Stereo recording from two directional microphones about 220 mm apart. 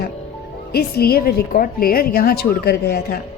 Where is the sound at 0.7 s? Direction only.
45° left (ahead or behind).